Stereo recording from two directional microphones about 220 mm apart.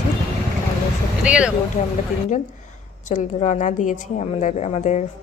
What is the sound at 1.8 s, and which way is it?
Speech, 40° left (ahead or behind).